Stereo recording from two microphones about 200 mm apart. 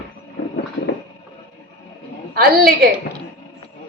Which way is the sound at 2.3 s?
50° right (ahead or behind).